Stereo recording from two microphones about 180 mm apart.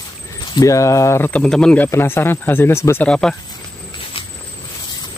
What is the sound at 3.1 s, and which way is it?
Speech, 5° left (ahead or behind).